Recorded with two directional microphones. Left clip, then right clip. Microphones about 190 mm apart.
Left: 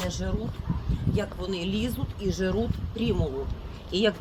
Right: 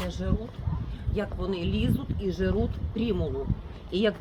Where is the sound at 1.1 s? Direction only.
40° right (ahead or behind).